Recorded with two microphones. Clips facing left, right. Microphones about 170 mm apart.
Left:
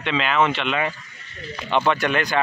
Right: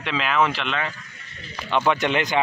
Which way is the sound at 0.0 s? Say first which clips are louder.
Left 1 dB; centre (ahead or behind).